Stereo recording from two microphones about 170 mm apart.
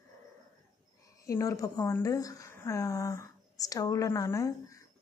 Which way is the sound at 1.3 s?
20° left (ahead or behind).